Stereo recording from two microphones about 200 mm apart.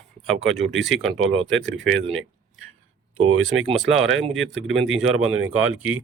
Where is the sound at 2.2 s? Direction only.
85° right.